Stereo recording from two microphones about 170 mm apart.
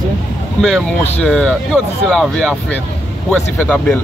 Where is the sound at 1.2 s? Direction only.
5° left (ahead or behind).